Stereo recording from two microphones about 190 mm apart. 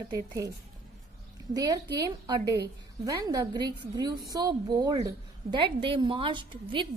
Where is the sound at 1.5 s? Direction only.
20° right (ahead or behind).